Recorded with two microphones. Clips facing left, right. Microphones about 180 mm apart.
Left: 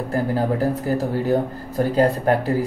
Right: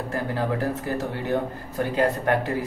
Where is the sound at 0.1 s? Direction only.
30° left (ahead or behind).